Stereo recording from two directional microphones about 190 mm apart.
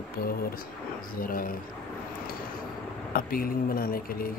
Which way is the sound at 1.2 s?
50° left (ahead or behind).